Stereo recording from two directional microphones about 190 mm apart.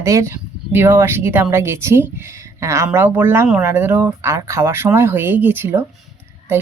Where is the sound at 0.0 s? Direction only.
15° right (ahead or behind).